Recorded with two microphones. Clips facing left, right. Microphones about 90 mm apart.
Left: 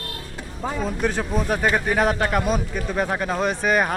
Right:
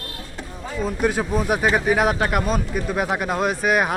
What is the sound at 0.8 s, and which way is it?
Speech, 5° right (ahead or behind).